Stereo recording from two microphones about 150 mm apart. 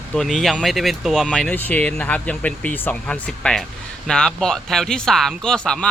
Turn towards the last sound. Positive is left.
turn(degrees=5)  # may be behind; listen again after turning